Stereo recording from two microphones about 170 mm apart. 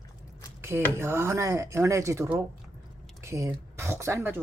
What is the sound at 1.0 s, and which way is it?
Speech, 15° right (ahead or behind).